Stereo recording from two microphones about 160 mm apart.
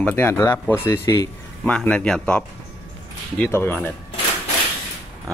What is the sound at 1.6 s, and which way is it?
Speech, 10° left (ahead or behind).